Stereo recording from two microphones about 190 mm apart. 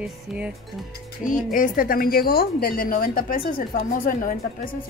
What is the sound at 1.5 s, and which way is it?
Speech, 45° left (ahead or behind).